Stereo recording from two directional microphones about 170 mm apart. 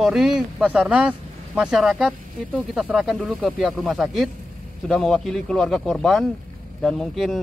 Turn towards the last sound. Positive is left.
turn(degrees=0)  # may be behind; listen again after turning